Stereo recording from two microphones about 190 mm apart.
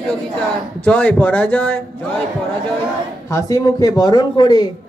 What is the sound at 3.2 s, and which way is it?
A man's voice, 15° left (ahead or behind).